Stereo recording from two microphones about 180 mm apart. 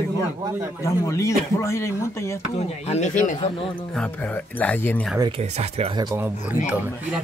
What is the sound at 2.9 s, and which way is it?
Speech, 45° left (ahead or behind).